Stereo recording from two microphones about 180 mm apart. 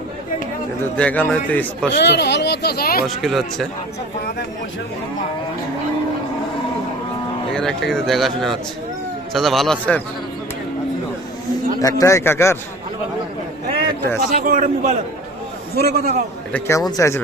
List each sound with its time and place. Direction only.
0.9 s a man's voice: 10° left (ahead or behind)
1.9 s speech: 70° left (ahead or behind)
3.2 s speech: centre (ahead or behind)
7.5 s speech: 5° left (ahead or behind)
11.8 s a man's voice: 20° left (ahead or behind)
14.2 s a man's voice: 50° right (ahead or behind)
15.7 s a man's voice: 60° right (ahead or behind)
16.5 s a man's voice: 10° left (ahead or behind)